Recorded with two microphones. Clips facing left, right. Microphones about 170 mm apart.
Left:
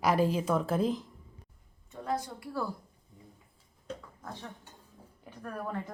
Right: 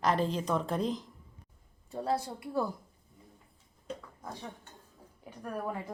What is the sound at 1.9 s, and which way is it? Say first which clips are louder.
Speech: right 2 dB; 35° right (ahead or behind).